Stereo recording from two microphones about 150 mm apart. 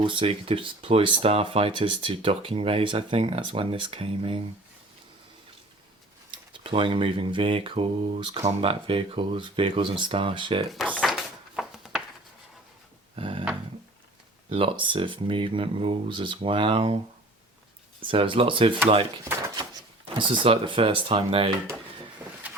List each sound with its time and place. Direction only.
0.0 s mantra: 35° right (ahead or behind)
6.3 s mantra: 35° right (ahead or behind)
10.8 s drawer open or close: 10° left (ahead or behind)
11.1 s a sound: centre (ahead or behind)
13.1 s a sound: 35° right (ahead or behind)
14.5 s mantra: 35° right (ahead or behind)
18.0 s mantra: 35° right (ahead or behind)
20.1 s mantra: 35° right (ahead or behind)
22.4 s vehicle: 10° right (ahead or behind)